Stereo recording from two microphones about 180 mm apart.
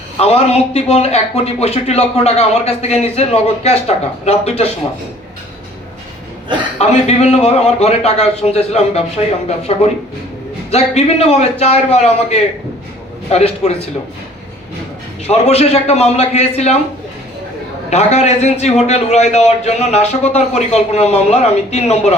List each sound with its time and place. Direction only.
0.2 s a man's voice: 35° left (ahead or behind)
6.7 s a man's voice: 35° left (ahead or behind)
15.3 s a man's voice: 35° left (ahead or behind)
17.9 s a man's voice: 40° left (ahead or behind)